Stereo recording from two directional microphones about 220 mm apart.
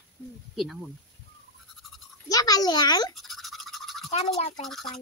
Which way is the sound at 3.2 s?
Centre (ahead or behind).